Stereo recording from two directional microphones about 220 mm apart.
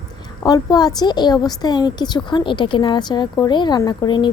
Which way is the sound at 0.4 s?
20° left (ahead or behind).